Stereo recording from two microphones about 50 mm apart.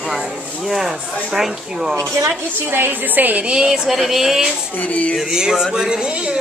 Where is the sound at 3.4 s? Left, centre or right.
Centre.